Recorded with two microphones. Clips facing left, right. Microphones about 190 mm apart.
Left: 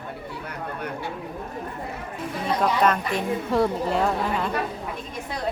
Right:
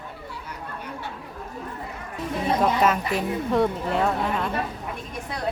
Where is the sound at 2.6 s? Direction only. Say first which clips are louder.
Left 1 dB; 5° right (ahead or behind).